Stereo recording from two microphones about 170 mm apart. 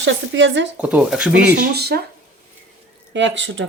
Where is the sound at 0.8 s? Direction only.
10° right (ahead or behind).